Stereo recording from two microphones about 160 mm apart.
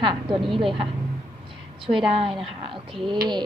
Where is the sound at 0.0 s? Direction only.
30° right (ahead or behind).